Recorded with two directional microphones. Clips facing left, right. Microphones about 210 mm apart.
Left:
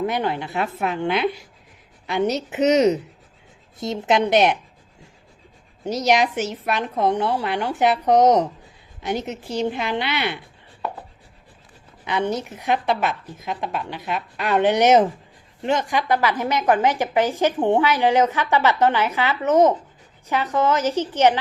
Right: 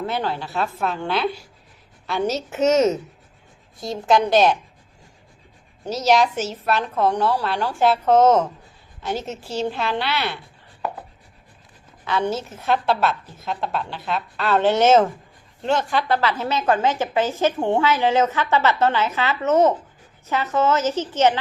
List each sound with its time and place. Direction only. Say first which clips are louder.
0.0 s a woman's voice: left 2 dB; 15° left (ahead or behind)
5.8 s a woman's voice: right 1 dB; 15° left (ahead or behind)
12.0 s a woman's voice: even; 15° left (ahead or behind)